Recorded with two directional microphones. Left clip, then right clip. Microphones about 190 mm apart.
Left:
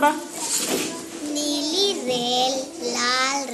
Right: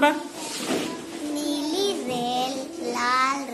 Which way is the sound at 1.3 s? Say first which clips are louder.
Left 3 dB; 10° right (ahead or behind).